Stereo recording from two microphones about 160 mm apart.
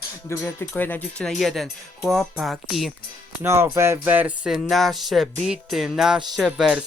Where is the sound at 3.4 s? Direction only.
15° right (ahead or behind).